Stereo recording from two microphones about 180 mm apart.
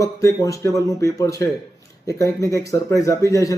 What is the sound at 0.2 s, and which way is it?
Speech, 20° left (ahead or behind).